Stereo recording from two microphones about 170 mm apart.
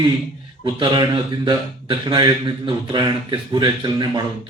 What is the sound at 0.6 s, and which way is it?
Speech, 30° right (ahead or behind).